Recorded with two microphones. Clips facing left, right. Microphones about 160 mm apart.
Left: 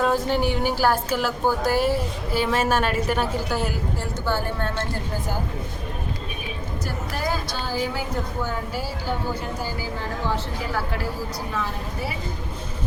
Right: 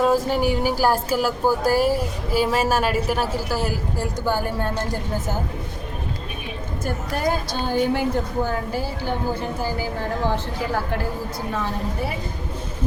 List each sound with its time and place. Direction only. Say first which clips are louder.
0.0 s speech: right 2 dB; 5° right (ahead or behind)
6.8 s a woman's voice: right 5 dB; 55° right (ahead or behind)